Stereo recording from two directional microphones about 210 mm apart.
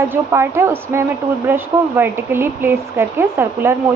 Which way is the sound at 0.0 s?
10° right (ahead or behind).